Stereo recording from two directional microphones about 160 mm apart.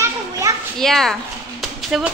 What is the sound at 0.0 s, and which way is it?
Children playing, 20° right (ahead or behind).